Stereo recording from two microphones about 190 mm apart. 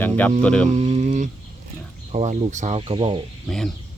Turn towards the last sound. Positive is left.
turn(degrees=0)  # may be behind; listen again after turning